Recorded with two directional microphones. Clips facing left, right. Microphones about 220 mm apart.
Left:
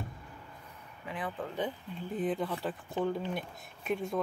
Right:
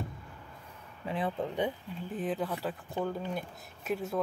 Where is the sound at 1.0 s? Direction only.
30° right (ahead or behind).